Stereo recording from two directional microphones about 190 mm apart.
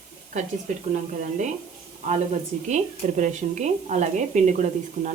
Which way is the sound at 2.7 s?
40° right (ahead or behind).